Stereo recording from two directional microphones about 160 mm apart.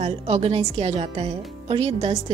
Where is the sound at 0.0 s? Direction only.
40° right (ahead or behind).